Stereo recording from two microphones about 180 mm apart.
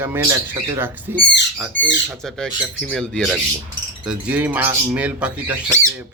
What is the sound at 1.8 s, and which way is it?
Speech, 90° left.